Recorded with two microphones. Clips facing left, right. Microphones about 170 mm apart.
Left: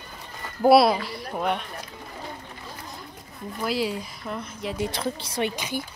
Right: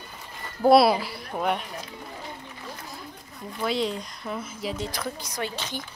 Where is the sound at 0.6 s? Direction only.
5° left (ahead or behind).